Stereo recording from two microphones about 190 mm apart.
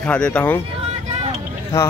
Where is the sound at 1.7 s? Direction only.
15° left (ahead or behind).